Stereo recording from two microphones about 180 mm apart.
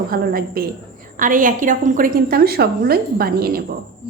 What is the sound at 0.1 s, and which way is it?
A woman's voice, 55° right (ahead or behind).